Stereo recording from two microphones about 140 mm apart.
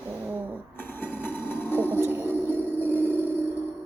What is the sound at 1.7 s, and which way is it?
Music, 15° left (ahead or behind).